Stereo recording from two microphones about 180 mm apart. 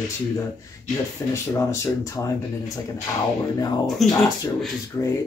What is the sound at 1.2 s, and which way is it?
Speech, 15° left (ahead or behind).